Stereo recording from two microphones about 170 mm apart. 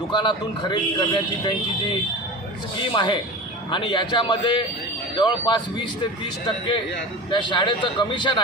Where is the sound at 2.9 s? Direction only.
25° left (ahead or behind).